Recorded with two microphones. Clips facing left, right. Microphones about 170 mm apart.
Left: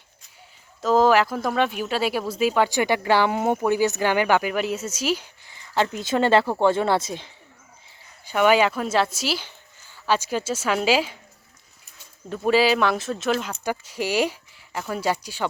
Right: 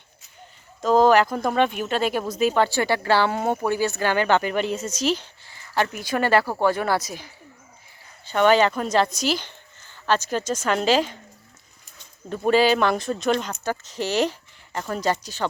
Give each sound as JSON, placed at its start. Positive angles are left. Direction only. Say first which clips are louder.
{"t": 0.8, "sound": "a woman's voice", "louder": "right 1 dB", "side_deg": 5}
{"t": 8.2, "sound": "speech", "louder": "right 1 dB", "side_deg": 10}
{"t": 12.5, "sound": "speech", "louder": "right 1 dB", "side_deg": 5}